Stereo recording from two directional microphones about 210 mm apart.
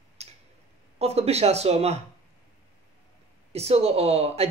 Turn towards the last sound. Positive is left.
turn(degrees=-30)  # may be behind; listen again after turning